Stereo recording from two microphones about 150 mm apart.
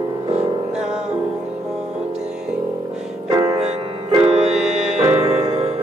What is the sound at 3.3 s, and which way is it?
Music, 25° right (ahead or behind).